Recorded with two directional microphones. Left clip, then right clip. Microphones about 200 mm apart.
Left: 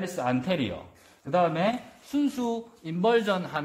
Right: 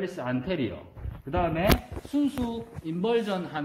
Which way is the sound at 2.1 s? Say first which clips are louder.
Even; 25° left (ahead or behind).